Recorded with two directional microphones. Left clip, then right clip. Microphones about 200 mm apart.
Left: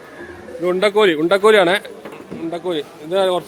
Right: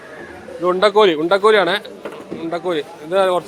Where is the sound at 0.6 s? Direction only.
20° left (ahead or behind).